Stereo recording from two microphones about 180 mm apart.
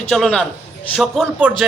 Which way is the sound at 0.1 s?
5° left (ahead or behind).